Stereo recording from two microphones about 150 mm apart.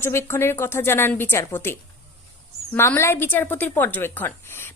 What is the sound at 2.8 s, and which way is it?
A woman's voice, 15° left (ahead or behind).